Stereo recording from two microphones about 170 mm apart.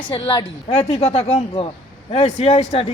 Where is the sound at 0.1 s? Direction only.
25° left (ahead or behind).